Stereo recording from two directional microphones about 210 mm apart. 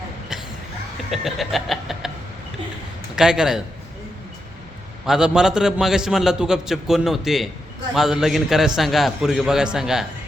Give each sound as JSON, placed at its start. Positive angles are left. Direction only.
{"t": 1.1, "sound": "a man's voice", "side_deg": 0}
{"t": 3.2, "sound": "a man's voice", "side_deg": -5}
{"t": 5.0, "sound": "a man's voice", "side_deg": -5}